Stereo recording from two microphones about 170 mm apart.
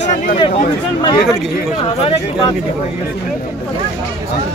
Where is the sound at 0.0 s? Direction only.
45° left (ahead or behind).